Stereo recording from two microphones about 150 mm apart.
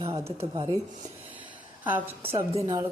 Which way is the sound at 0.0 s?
40° right (ahead or behind).